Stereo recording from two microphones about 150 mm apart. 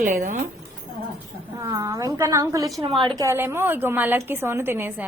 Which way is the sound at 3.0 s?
35° right (ahead or behind).